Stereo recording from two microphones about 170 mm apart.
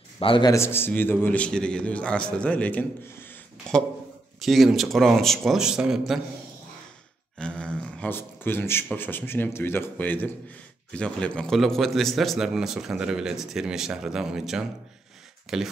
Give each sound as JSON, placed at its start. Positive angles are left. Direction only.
{"t": 0.2, "sound": "a man's voice", "side_deg": 30}
{"t": 0.5, "sound": "a man's voice", "side_deg": 15}
{"t": 7.3, "sound": "a man's voice", "side_deg": 5}